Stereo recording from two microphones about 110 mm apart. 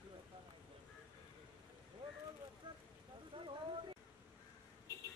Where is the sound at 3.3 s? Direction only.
45° right (ahead or behind).